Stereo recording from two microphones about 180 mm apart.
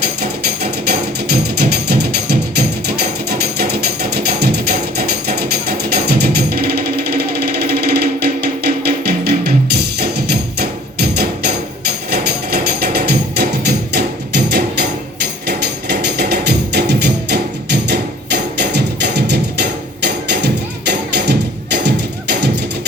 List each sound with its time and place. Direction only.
0.2 s music: 65° right (ahead or behind)